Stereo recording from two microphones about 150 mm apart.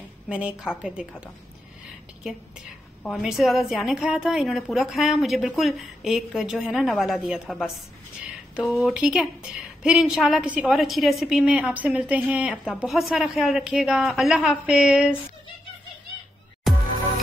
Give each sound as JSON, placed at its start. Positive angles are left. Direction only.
{"t": 0.3, "sound": "a woman's voice", "side_deg": -5}
{"t": 3.0, "sound": "a woman's voice", "side_deg": 0}
{"t": 8.5, "sound": "a woman's voice", "side_deg": -5}